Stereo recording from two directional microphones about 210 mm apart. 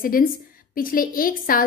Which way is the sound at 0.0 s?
40° left (ahead or behind).